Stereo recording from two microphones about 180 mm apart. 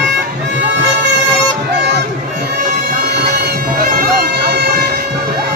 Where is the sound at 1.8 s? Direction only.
70° right (ahead or behind).